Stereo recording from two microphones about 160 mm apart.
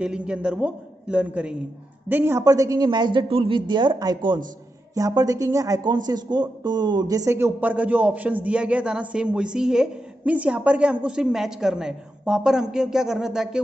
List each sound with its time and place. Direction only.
0.0 s a man's voice: 5° right (ahead or behind)